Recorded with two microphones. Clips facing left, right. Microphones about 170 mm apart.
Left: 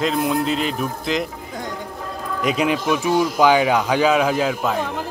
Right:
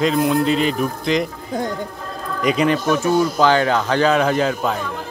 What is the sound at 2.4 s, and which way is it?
Speech, 5° left (ahead or behind).